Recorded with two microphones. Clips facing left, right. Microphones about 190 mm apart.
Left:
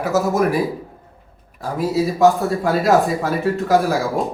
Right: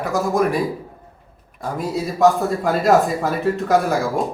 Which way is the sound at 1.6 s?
5° left (ahead or behind).